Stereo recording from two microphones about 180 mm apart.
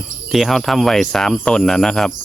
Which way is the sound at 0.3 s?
Centre (ahead or behind).